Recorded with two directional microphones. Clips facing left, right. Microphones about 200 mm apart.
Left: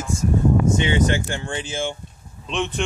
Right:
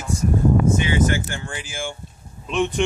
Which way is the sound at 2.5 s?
10° right (ahead or behind).